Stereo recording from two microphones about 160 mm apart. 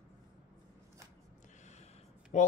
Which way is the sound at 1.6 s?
50° left (ahead or behind).